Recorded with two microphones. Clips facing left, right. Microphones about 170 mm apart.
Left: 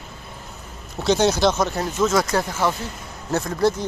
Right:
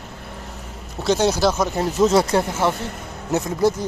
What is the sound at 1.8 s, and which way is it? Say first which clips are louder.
Speech: right 4 dB; 35° right (ahead or behind).